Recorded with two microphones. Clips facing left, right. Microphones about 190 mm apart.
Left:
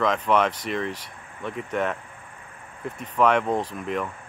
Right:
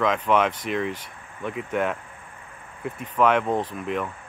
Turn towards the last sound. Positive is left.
turn(degrees=0)  # may be behind; listen again after turning